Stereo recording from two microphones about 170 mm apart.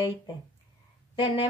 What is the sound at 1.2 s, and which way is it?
Speech, 30° left (ahead or behind).